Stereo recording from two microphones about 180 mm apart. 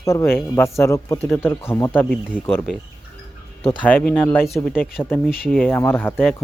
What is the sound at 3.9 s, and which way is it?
Speech, 10° left (ahead or behind).